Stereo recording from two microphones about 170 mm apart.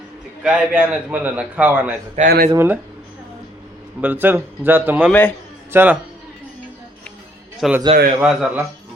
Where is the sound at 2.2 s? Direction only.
60° right (ahead or behind).